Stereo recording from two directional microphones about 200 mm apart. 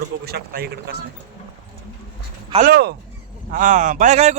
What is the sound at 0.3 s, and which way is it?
Speech, 50° right (ahead or behind).